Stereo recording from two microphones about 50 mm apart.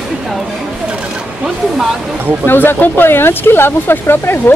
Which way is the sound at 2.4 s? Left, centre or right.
Left.